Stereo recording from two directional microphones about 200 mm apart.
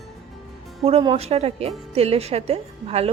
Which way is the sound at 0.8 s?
30° right (ahead or behind).